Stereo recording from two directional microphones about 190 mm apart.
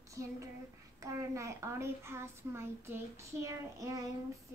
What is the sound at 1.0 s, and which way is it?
A woman's voice, 15° right (ahead or behind).